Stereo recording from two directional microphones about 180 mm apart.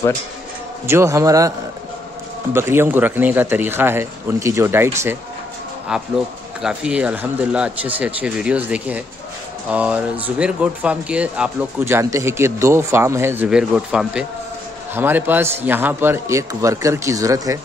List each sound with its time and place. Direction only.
0.8 s speech: 15° right (ahead or behind)
2.5 s speech: 15° right (ahead or behind)
6.6 s speech: 5° right (ahead or behind)